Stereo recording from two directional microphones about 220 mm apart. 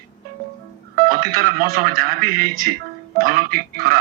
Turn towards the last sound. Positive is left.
turn(degrees=-40)  # may be behind; listen again after turning